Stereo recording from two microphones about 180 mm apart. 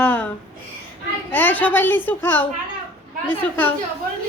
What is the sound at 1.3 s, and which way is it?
Speech, 10° left (ahead or behind).